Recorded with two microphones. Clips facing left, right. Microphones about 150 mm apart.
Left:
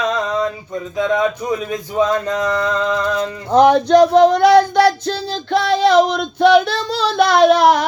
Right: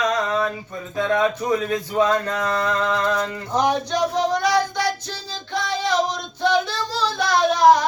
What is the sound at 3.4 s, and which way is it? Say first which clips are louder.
Child singing: left 11 dB; 65° left (ahead or behind).